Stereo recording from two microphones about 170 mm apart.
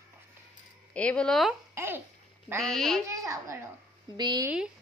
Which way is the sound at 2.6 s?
Centre (ahead or behind).